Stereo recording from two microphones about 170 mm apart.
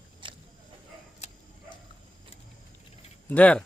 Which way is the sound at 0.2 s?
30° right (ahead or behind).